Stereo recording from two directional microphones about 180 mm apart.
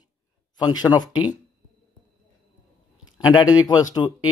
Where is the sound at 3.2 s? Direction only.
25° left (ahead or behind).